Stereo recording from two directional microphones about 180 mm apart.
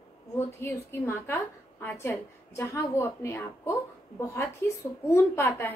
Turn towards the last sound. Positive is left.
turn(degrees=15)  # may be behind; listen again after turning